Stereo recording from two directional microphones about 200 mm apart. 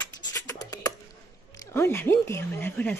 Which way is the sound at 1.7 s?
10° left (ahead or behind).